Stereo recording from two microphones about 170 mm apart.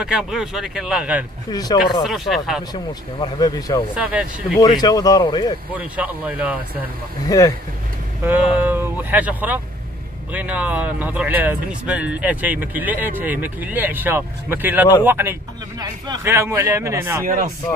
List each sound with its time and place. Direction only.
0.0 s speech: 5° right (ahead or behind)
1.5 s speech: 25° left (ahead or behind)
2.0 s speech: centre (ahead or behind)
2.7 s speech: 25° left (ahead or behind)
3.9 s speech: 5° right (ahead or behind)
4.6 s speech: 25° left (ahead or behind)
5.8 s speech: 10° right (ahead or behind)
7.2 s speech: 20° left (ahead or behind)
8.2 s speech: 10° right (ahead or behind)
17.2 s speech: 55° right (ahead or behind)